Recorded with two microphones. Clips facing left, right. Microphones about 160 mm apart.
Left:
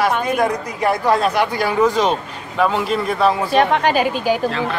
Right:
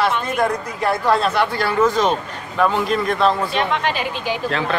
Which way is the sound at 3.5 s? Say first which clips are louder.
Left 5 dB; 45° left (ahead or behind).